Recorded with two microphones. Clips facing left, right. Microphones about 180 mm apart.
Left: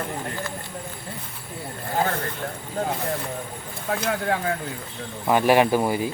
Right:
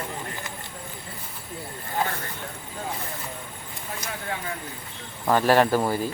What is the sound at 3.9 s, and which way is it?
Speech, 65° left (ahead or behind).